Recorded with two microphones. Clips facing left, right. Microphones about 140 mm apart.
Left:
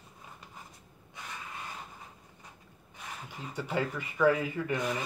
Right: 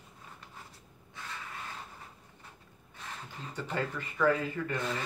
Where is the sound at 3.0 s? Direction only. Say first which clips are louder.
Left 1 dB; 10° left (ahead or behind).